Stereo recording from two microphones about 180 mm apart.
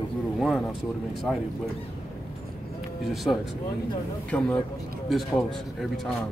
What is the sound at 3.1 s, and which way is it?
Speech, centre (ahead or behind).